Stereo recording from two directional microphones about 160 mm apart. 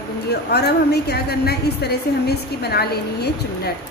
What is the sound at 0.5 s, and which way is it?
A woman's voice, 90° left.